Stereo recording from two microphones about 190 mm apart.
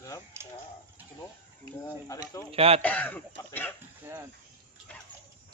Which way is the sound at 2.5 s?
30° right (ahead or behind).